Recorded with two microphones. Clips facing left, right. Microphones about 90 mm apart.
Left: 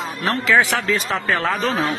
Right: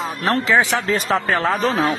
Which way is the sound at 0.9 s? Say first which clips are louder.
Right 2 dB; 40° right (ahead or behind).